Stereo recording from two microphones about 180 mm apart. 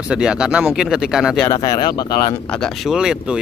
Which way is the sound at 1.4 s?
20° left (ahead or behind).